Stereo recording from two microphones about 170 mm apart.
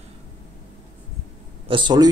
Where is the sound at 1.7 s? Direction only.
30° right (ahead or behind).